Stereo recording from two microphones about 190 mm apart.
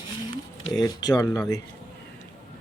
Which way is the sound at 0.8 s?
20° left (ahead or behind).